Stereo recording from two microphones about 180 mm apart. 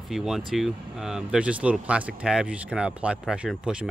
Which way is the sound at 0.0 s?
Centre (ahead or behind).